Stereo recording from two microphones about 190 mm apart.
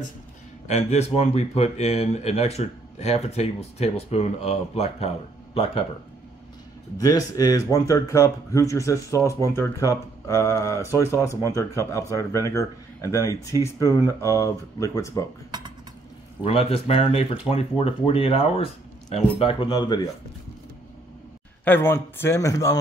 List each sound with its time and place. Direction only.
0.7 s speech: 35° left (ahead or behind)
7.0 s speech: 20° left (ahead or behind)
16.4 s speech: 30° left (ahead or behind)
21.6 s speech: 10° left (ahead or behind)